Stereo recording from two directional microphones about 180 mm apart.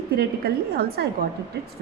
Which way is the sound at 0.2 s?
60° right (ahead or behind).